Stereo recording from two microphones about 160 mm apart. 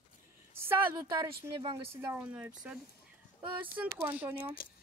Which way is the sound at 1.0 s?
25° right (ahead or behind).